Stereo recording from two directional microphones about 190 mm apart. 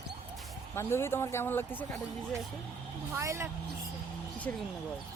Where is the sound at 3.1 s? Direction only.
15° right (ahead or behind).